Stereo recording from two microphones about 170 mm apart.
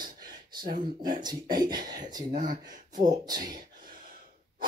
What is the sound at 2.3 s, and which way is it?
Speech, 50° right (ahead or behind).